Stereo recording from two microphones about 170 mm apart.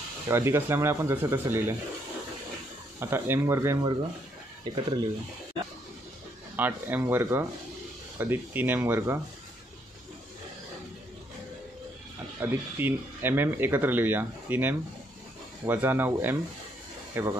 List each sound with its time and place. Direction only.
0.3 s speech: 15° right (ahead or behind)
3.0 s speech: 15° right (ahead or behind)
6.5 s speech: 10° right (ahead or behind)
12.4 s speech: 10° right (ahead or behind)